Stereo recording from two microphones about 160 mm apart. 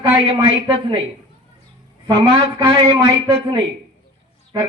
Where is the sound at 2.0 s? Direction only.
30° right (ahead or behind).